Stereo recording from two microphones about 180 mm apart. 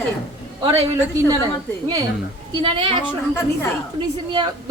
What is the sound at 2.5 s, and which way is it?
Speech, 30° right (ahead or behind).